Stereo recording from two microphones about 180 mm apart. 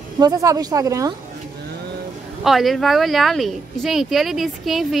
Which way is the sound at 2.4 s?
Centre (ahead or behind).